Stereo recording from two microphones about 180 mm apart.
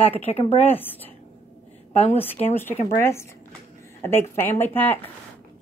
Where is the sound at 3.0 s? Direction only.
15° left (ahead or behind).